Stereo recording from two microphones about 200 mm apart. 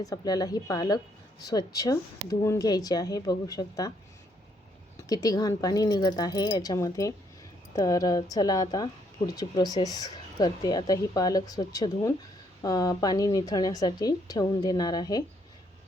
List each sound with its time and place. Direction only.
0.0 s a woman's voice: 20° left (ahead or behind)
4.9 s a woman's voice: 20° left (ahead or behind)